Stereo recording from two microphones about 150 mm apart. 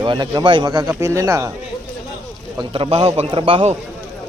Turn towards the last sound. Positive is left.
turn(degrees=-35)  # may be behind; listen again after turning